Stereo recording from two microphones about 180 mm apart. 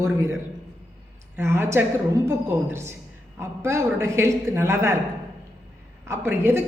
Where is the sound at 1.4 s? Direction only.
15° right (ahead or behind).